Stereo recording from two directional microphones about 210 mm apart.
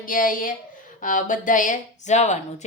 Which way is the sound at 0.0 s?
40° left (ahead or behind).